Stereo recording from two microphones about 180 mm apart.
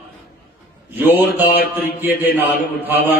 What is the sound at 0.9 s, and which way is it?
Speech, 10° right (ahead or behind).